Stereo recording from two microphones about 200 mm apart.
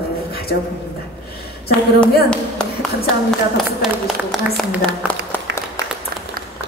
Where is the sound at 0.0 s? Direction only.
50° left (ahead or behind).